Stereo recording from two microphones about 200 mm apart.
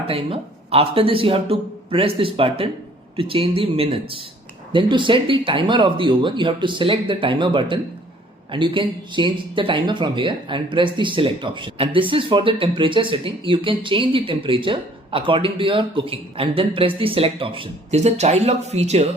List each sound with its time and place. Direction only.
0.1 s speech: 30° right (ahead or behind)